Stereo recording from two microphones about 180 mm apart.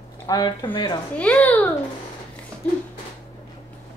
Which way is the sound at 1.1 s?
5° left (ahead or behind).